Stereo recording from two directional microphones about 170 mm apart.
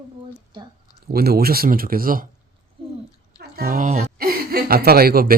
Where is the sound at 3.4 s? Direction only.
65° right (ahead or behind); by 4.1 s 45° right (ahead or behind).